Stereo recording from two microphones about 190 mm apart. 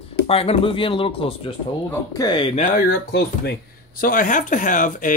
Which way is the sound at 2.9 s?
55° left (ahead or behind).